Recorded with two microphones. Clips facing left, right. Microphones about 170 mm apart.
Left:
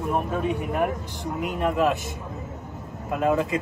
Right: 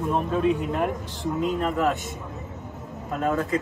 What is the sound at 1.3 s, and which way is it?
Speech, 15° left (ahead or behind).